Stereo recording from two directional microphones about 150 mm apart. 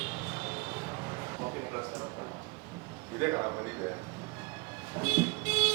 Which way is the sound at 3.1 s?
15° right (ahead or behind).